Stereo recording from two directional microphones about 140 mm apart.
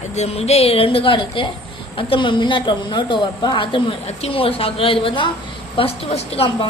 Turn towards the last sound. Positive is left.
turn(degrees=45)  # may be behind; listen again after turning